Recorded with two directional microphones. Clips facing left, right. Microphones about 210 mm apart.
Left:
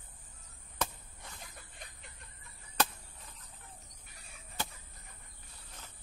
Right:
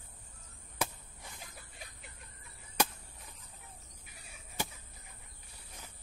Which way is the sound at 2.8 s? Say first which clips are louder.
Even; 10° right (ahead or behind).